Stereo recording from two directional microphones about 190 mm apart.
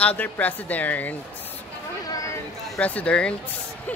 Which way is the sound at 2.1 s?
15° left (ahead or behind).